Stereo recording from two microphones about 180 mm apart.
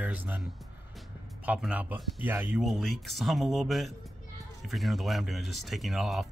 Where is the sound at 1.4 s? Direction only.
5° right (ahead or behind).